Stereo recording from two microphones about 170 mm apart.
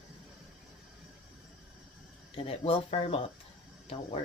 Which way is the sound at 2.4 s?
35° left (ahead or behind).